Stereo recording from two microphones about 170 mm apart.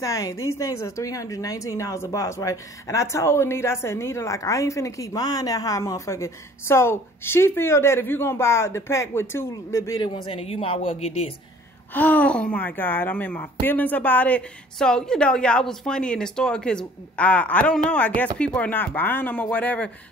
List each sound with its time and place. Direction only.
0.0 s a woman's voice: 20° left (ahead or behind); by 11.3 s 35° left (ahead or behind)
11.9 s a woman's voice: 10° left (ahead or behind)